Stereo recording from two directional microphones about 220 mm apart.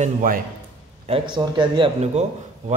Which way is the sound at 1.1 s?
20° right (ahead or behind).